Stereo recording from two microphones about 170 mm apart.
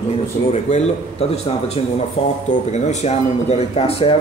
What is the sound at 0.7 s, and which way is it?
Speech, 40° left (ahead or behind).